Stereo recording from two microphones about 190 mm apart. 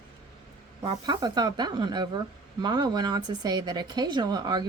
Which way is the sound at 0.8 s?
20° right (ahead or behind).